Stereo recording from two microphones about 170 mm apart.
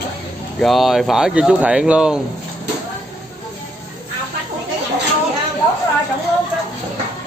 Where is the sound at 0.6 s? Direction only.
Centre (ahead or behind).